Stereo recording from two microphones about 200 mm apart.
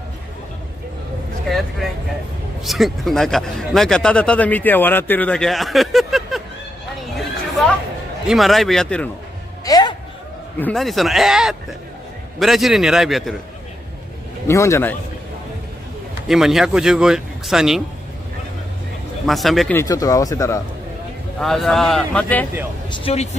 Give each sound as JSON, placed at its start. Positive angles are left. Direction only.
{"t": 2.6, "sound": "speech", "side_deg": 0}
{"t": 7.2, "sound": "chatter", "side_deg": 0}
{"t": 8.3, "sound": "speech", "side_deg": 0}
{"t": 9.7, "sound": "music", "side_deg": 20}
{"t": 10.6, "sound": "speech", "side_deg": 0}
{"t": 14.5, "sound": "speech", "side_deg": 15}
{"t": 16.3, "sound": "speech", "side_deg": 0}
{"t": 19.2, "sound": "speech", "side_deg": 0}
{"t": 19.8, "sound": "speech", "side_deg": 15}
{"t": 21.4, "sound": "speech", "side_deg": 0}
{"t": 22.8, "sound": "speech", "side_deg": 25}